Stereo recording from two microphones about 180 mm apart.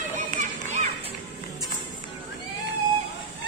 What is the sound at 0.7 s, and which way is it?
Music, 35° right (ahead or behind).